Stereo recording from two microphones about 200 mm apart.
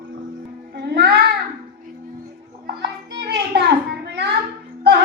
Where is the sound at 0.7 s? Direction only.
55° right (ahead or behind).